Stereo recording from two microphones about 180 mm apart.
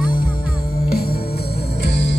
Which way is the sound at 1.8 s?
70° left (ahead or behind).